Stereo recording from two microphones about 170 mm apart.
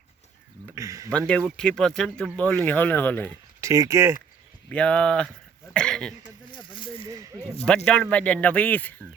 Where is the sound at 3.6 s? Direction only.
15° right (ahead or behind).